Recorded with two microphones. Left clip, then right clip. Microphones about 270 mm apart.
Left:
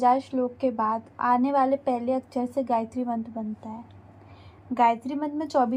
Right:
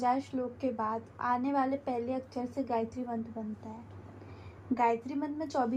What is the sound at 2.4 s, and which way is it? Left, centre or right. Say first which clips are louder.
Speech: left 5 dB; left.